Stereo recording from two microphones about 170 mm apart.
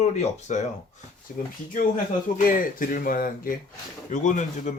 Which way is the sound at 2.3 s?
55° left (ahead or behind).